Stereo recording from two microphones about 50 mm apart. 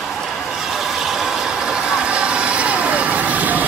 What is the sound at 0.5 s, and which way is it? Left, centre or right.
Vehicle, centre.